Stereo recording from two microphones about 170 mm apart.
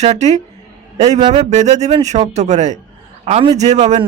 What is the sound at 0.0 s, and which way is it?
A man's voice, 40° right (ahead or behind).